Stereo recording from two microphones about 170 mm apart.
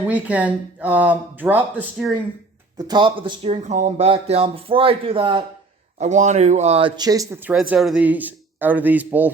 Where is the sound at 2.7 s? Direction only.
25° right (ahead or behind).